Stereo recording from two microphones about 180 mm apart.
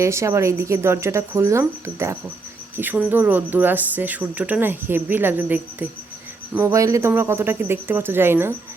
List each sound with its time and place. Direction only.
0.0 s speech: 15° right (ahead or behind)